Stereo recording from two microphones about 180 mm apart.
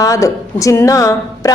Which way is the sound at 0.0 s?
20° left (ahead or behind).